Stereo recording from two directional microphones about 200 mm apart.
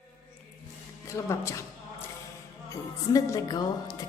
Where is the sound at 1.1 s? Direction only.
15° left (ahead or behind).